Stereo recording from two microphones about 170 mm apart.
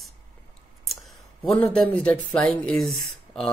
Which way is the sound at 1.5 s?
10° left (ahead or behind).